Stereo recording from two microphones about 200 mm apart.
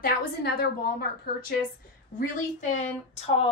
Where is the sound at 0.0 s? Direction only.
50° left (ahead or behind).